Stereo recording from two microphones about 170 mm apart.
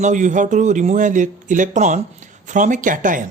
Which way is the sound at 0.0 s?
45° right (ahead or behind).